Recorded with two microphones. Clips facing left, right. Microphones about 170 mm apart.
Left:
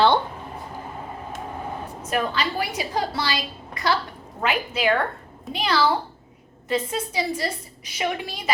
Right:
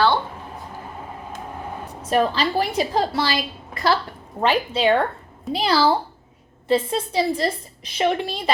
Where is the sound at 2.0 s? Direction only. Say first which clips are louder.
Right 5 dB; 35° right (ahead or behind).